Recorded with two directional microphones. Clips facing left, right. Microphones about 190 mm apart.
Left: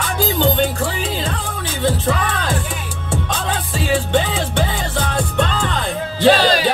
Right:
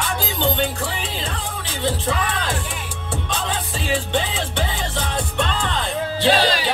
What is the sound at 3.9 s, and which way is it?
Music, 45° left (ahead or behind).